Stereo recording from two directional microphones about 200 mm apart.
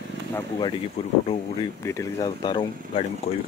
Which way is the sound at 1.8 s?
15° left (ahead or behind).